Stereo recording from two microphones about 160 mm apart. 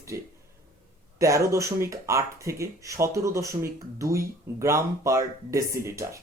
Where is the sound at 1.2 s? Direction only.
20° right (ahead or behind).